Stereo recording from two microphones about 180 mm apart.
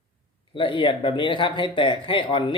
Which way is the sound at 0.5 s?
30° left (ahead or behind).